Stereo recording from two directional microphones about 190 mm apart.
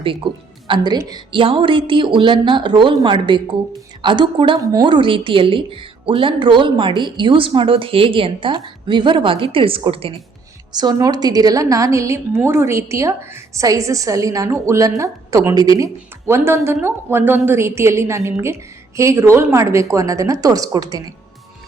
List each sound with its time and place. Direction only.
0.7 s a woman's voice: 25° right (ahead or behind)